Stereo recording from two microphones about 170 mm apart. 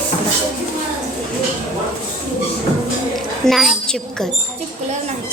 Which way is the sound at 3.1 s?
Centre (ahead or behind).